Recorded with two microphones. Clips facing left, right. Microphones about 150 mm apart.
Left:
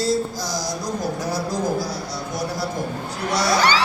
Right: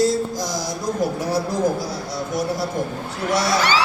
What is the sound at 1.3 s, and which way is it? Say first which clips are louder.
Speech: right 3 dB; 25° right (ahead or behind).